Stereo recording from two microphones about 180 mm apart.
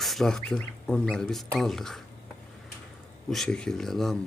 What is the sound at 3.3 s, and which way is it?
Speech, 5° left (ahead or behind).